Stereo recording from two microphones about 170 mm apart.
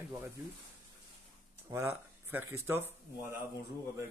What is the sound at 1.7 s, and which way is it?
Speech, 15° right (ahead or behind).